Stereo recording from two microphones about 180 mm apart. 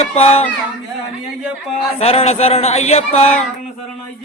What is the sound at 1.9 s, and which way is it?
Speech, 35° left (ahead or behind).